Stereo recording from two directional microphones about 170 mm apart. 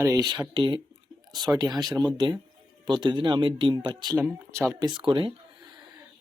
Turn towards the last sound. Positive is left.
turn(degrees=-30)  # may be behind; listen again after turning